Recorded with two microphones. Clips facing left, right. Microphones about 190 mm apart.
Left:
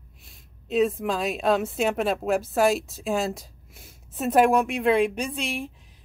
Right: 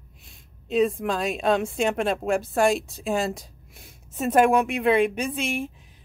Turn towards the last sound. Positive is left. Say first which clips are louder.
# right 2 dB
turn(degrees=0)  # may be behind; listen again after turning